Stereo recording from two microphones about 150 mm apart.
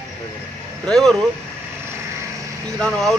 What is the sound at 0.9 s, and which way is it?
Speech, 5° left (ahead or behind).